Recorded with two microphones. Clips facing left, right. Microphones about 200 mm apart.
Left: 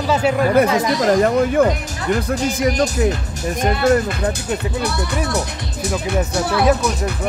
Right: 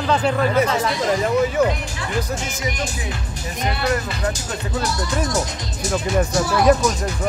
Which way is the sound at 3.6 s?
45° left (ahead or behind).